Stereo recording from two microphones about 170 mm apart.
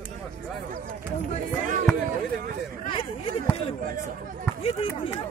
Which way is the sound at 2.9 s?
30° left (ahead or behind).